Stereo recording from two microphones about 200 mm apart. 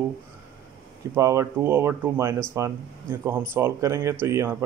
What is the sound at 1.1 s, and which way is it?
Speech, 15° right (ahead or behind).